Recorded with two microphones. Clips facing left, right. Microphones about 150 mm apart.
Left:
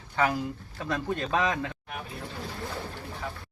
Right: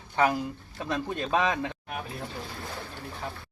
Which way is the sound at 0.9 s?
20° right (ahead or behind).